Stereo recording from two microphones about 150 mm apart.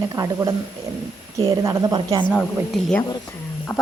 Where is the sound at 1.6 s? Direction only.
20° right (ahead or behind).